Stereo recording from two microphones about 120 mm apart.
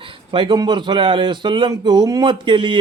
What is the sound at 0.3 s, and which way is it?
Speech, 40° right (ahead or behind).